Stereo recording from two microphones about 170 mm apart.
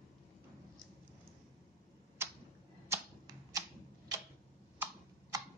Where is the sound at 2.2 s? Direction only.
15° right (ahead or behind).